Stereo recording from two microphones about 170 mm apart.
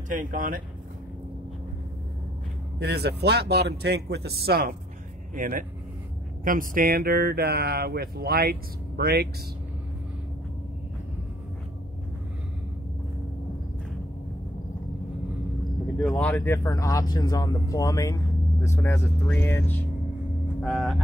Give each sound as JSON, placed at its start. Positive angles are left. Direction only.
{"t": 0.1, "sound": "speech", "side_deg": -50}
{"t": 2.8, "sound": "speech", "side_deg": -75}
{"t": 5.3, "sound": "speech", "side_deg": -50}
{"t": 16.0, "sound": "speech", "side_deg": 10}
{"t": 20.6, "sound": "speech", "side_deg": 0}